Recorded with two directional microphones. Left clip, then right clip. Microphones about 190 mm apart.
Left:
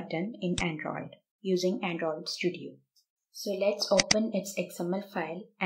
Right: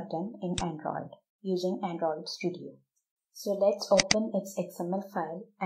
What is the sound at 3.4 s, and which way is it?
Speech, 15° right (ahead or behind).